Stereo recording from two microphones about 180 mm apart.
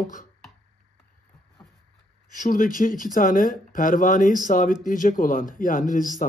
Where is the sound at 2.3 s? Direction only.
45° left (ahead or behind).